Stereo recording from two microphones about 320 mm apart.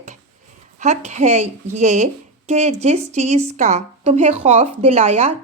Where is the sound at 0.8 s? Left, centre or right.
Right.